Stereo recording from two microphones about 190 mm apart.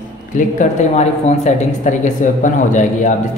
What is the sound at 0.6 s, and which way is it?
A man's voice, 35° left (ahead or behind).